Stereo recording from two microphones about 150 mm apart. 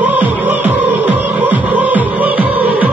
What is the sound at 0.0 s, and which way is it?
Music, 10° right (ahead or behind).